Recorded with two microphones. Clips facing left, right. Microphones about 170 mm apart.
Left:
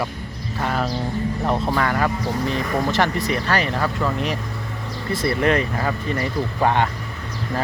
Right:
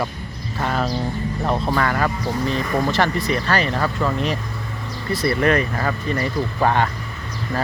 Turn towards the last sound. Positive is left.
turn(degrees=15)  # may be behind; listen again after turning